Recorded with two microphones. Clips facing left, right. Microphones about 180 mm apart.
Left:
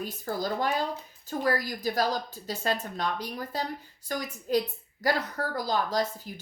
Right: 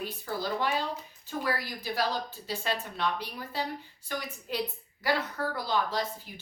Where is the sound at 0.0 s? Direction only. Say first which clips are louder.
Left 2 dB; 45° left (ahead or behind).